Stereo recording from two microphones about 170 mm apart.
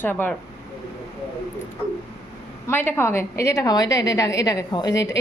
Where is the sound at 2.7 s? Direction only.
15° left (ahead or behind).